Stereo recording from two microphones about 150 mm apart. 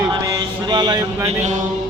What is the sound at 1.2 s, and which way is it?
Chant, 50° right (ahead or behind).